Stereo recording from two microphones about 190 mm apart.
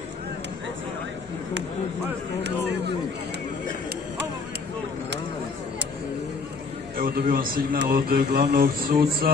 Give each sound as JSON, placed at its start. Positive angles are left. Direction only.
{"t": 7.0, "sound": "a man's voice", "side_deg": -50}